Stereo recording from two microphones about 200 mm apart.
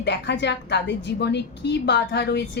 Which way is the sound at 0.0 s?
60° left (ahead or behind).